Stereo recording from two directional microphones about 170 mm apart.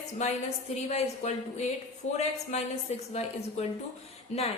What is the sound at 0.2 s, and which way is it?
A woman's voice, 40° left (ahead or behind).